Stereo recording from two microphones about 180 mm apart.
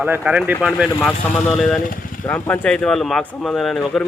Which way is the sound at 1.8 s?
50° left (ahead or behind).